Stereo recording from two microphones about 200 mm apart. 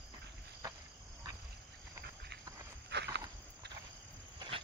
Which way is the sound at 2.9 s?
60° right (ahead or behind).